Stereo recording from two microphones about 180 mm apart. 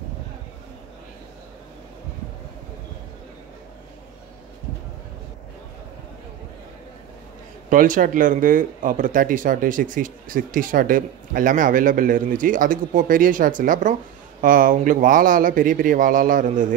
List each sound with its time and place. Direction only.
7.7 s speech: 45° right (ahead or behind)